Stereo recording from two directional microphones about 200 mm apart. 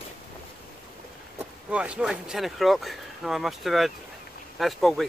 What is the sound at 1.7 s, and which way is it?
Speech, 5° right (ahead or behind).